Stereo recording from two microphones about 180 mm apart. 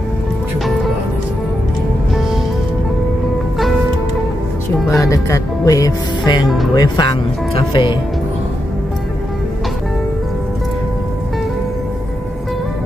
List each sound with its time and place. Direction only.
5.0 s speech: 20° left (ahead or behind)